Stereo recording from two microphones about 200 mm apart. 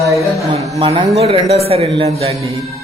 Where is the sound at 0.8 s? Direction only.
30° right (ahead or behind).